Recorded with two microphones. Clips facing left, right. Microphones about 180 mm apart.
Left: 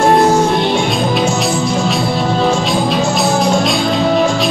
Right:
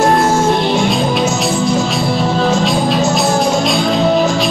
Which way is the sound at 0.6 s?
Centre (ahead or behind).